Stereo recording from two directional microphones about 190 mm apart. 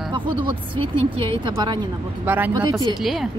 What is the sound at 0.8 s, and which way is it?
A woman's voice, 25° right (ahead or behind).